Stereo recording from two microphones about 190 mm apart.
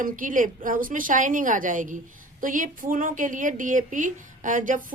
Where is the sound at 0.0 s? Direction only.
45° right (ahead or behind).